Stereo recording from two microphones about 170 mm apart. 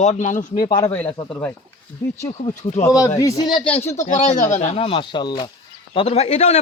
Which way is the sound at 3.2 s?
20° left (ahead or behind).